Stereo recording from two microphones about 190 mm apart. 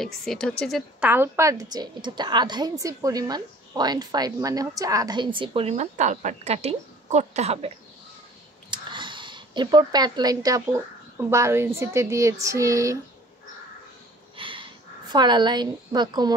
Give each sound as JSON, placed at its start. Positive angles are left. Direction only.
{"t": 0.0, "sound": "a woman's voice", "side_deg": 0}
{"t": 1.0, "sound": "a woman's voice", "side_deg": -10}
{"t": 14.3, "sound": "a sound", "side_deg": -25}